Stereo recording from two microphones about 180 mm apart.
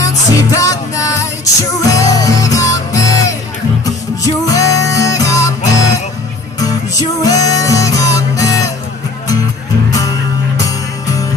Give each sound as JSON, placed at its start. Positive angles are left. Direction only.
{"t": 0.0, "sound": "music", "side_deg": 20}
{"t": 7.2, "sound": "music", "side_deg": 20}
{"t": 9.8, "sound": "music", "side_deg": 20}